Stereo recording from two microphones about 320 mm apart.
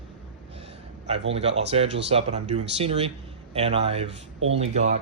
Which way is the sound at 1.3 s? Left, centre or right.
Centre.